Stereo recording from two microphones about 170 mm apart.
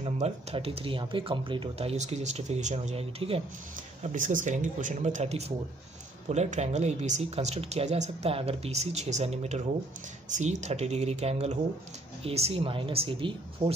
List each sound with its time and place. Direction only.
0.0 s speech: 40° right (ahead or behind)
4.0 s speech: 50° right (ahead or behind); by 13.7 s 30° right (ahead or behind)